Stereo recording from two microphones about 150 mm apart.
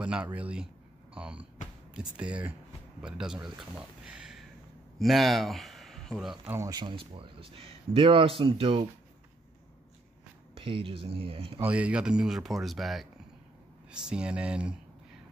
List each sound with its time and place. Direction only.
0.0 s a man's voice: 10° right (ahead or behind)
6.4 s speech: 15° right (ahead or behind)
6.7 s speech: 30° right (ahead or behind)
10.5 s speech: 35° right (ahead or behind)
11.6 s speech: 10° right (ahead or behind)